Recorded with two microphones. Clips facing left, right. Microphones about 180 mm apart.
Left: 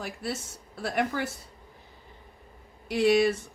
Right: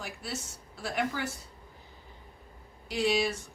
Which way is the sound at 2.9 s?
60° left (ahead or behind).